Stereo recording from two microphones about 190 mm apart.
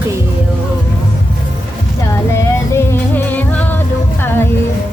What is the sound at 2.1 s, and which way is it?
Music, 15° left (ahead or behind).